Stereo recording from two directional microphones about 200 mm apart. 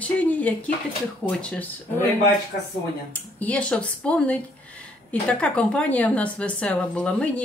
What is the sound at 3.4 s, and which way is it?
Speech, 5° left (ahead or behind).